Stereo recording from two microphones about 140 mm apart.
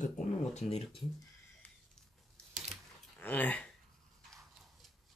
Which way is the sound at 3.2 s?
10° left (ahead or behind).